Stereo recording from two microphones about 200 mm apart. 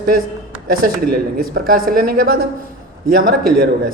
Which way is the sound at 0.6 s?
50° right (ahead or behind).